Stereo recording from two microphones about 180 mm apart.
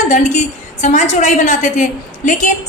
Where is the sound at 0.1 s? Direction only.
40° left (ahead or behind).